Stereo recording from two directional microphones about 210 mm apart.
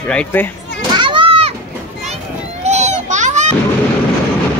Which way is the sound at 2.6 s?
30° right (ahead or behind).